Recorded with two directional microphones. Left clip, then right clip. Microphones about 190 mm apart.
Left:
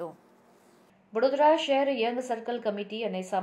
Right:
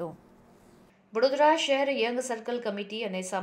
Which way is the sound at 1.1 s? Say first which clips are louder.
Even; 25° right (ahead or behind).